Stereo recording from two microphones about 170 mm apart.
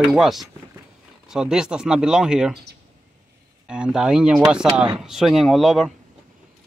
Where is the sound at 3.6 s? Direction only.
5° right (ahead or behind).